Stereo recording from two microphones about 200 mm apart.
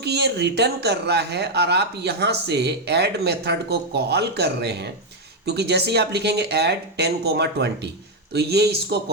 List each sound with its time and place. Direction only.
0.0 s speech: 55° right (ahead or behind)